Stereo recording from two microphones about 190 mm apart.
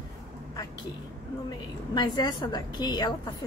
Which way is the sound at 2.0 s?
20° left (ahead or behind).